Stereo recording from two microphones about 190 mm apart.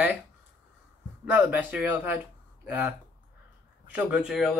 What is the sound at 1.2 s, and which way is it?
Speech, 10° right (ahead or behind).